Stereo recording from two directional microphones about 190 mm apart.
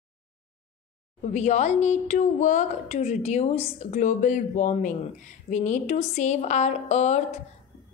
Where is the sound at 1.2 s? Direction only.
35° left (ahead or behind).